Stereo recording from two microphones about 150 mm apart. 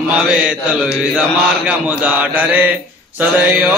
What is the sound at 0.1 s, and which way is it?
Mantra, 10° right (ahead or behind).